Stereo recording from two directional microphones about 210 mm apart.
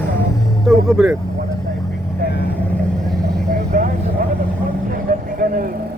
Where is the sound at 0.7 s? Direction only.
Centre (ahead or behind).